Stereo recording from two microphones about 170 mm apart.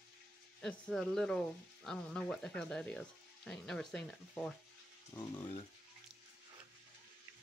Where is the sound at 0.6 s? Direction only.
5° left (ahead or behind).